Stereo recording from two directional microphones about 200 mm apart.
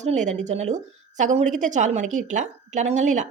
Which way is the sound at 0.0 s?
35° right (ahead or behind).